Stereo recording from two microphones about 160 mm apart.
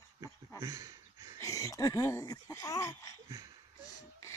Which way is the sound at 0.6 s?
20° right (ahead or behind).